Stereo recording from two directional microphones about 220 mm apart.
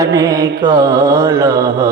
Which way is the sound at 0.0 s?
15° right (ahead or behind).